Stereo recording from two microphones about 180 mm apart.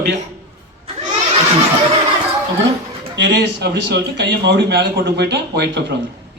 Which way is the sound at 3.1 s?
75° right (ahead or behind).